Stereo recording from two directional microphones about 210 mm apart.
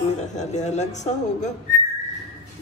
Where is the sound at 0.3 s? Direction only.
35° left (ahead or behind).